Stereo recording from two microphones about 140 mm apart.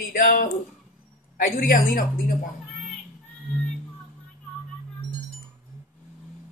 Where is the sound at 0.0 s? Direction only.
75° left (ahead or behind).